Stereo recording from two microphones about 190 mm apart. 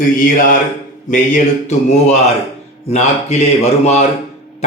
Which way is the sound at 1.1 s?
45° left (ahead or behind).